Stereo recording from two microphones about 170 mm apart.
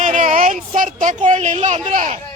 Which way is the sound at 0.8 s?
50° right (ahead or behind).